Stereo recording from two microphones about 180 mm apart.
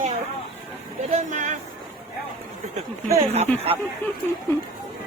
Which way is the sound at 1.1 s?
40° right (ahead or behind).